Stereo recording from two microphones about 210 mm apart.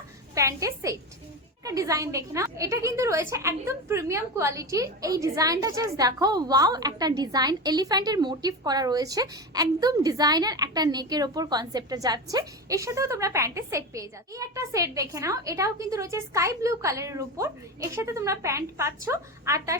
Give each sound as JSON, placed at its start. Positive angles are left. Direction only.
{"t": 0.3, "sound": "a woman's voice", "side_deg": -15}